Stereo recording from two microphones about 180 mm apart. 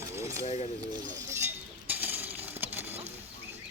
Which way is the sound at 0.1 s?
15° right (ahead or behind).